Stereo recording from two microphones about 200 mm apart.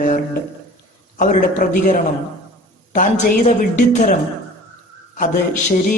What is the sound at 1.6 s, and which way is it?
Speech, 45° left (ahead or behind).